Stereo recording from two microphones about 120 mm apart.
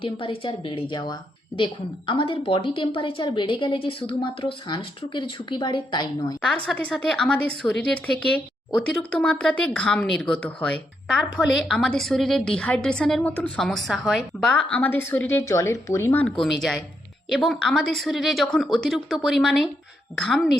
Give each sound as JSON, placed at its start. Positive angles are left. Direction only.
{"t": 0.0, "sound": "a woman's voice", "side_deg": 50}
{"t": 6.7, "sound": "a woman's voice", "side_deg": 0}
{"t": 16.4, "sound": "a woman's voice", "side_deg": 0}